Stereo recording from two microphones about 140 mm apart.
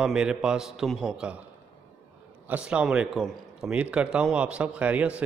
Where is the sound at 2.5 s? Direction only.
5° right (ahead or behind).